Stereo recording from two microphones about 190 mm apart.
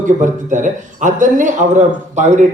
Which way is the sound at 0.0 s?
40° right (ahead or behind).